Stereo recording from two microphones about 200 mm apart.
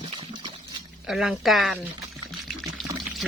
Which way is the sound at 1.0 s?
Centre (ahead or behind).